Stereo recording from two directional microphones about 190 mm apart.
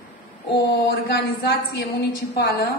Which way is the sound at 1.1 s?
60° left (ahead or behind).